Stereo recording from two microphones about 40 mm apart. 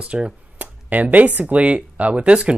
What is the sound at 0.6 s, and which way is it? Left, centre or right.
Speech, right.